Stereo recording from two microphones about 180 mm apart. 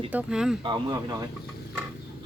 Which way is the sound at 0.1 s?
5° right (ahead or behind).